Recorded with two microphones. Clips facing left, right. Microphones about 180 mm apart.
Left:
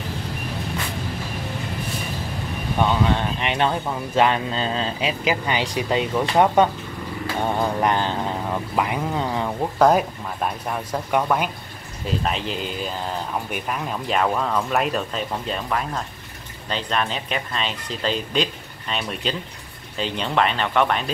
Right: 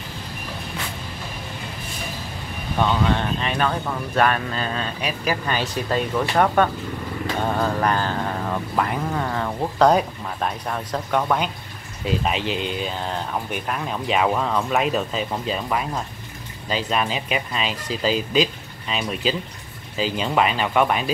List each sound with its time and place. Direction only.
3.2 s speech: 20° left (ahead or behind)
9.6 s speech: 5° left (ahead or behind)